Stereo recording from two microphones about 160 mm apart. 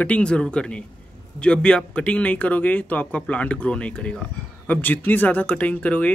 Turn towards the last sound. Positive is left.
turn(degrees=10)  # may be behind; listen again after turning